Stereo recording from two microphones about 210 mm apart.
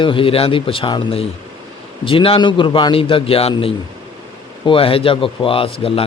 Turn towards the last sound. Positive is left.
turn(degrees=25)  # may be behind; listen again after turning